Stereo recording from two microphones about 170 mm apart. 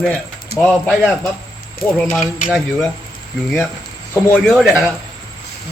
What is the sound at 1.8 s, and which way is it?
Speech, 5° right (ahead or behind).